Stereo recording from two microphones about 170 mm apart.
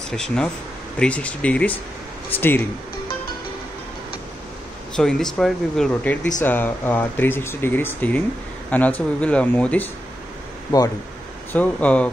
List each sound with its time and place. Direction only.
0.1 s speech: 5° left (ahead or behind)
4.9 s speech: 5° left (ahead or behind)
10.7 s speech: 25° left (ahead or behind)
11.5 s speech: 10° left (ahead or behind)